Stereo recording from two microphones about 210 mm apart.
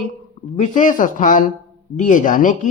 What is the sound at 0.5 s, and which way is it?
Speech, 35° left (ahead or behind).